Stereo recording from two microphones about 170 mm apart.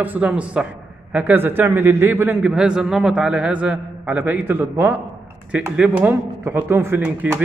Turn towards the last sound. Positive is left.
turn(degrees=-10)  # may be behind; listen again after turning